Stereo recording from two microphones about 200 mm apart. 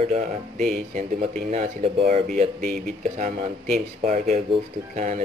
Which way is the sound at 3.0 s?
35° right (ahead or behind).